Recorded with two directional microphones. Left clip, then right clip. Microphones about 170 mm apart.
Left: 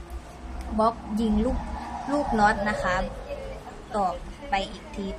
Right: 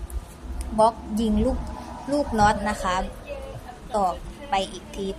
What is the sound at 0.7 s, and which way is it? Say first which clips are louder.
A woman's voice: right 4 dB; 15° right (ahead or behind).